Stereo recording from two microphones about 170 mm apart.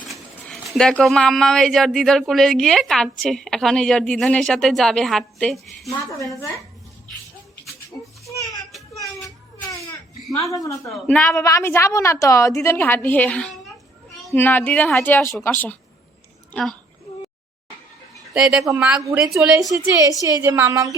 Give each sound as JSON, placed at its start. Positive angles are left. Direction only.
{"t": 0.1, "sound": "speech", "side_deg": 0}
{"t": 8.7, "sound": "a sound", "side_deg": 0}
{"t": 10.5, "sound": "a woman's voice", "side_deg": 20}
{"t": 18.1, "sound": "a sound", "side_deg": 0}
{"t": 18.7, "sound": "speech", "side_deg": -5}
{"t": 20.2, "sound": "a woman's voice", "side_deg": -20}